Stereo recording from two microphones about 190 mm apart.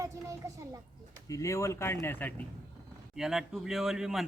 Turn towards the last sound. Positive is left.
turn(degrees=0)  # may be behind; listen again after turning